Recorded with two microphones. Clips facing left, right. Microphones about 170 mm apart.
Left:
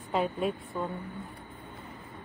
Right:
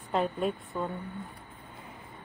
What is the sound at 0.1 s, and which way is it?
Speech, centre (ahead or behind).